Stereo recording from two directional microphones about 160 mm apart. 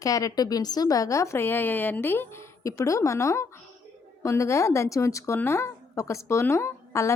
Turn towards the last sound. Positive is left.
turn(degrees=15)  # may be behind; listen again after turning